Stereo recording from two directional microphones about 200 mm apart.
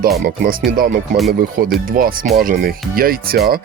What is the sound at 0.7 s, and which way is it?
Speech, 45° right (ahead or behind).